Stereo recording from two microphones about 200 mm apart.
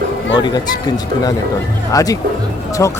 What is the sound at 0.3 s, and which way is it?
Speech, 20° left (ahead or behind).